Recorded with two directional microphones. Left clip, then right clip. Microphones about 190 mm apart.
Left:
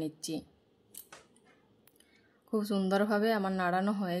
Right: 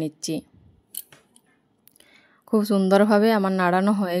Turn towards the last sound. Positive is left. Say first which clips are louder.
# right 10 dB
turn(degrees=-35)  # may be behind; listen again after turning